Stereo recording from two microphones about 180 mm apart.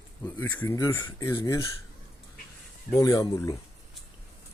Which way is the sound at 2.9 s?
15° left (ahead or behind).